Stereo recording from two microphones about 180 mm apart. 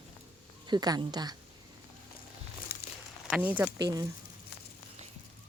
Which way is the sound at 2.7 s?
60° left (ahead or behind).